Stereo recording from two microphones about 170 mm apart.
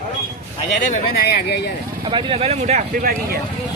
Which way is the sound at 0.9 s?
65° left (ahead or behind).